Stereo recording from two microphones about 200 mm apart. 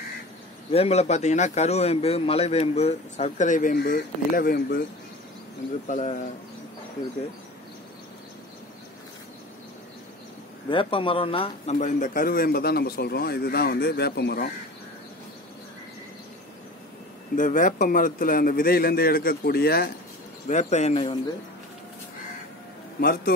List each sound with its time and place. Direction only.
0.7 s a man's voice: 30° left (ahead or behind); by 4.8 s 45° left (ahead or behind)
5.9 s a man's voice: 35° left (ahead or behind)
10.7 s speech: 25° left (ahead or behind)
11.7 s a man's voice: 40° left (ahead or behind)
17.4 s a man's voice: 40° left (ahead or behind)
20.4 s a man's voice: 35° left (ahead or behind)
22.9 s a man's voice: 50° left (ahead or behind)